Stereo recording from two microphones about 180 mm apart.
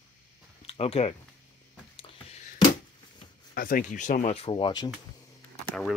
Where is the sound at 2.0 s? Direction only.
30° left (ahead or behind).